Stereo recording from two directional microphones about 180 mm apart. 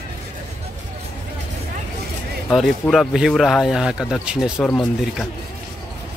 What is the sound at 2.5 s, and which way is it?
Speech, centre (ahead or behind).